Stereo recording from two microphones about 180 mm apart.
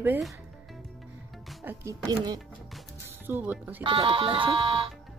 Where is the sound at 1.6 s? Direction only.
15° right (ahead or behind).